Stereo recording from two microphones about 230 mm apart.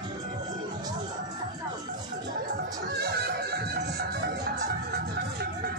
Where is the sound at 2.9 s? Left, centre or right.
Right.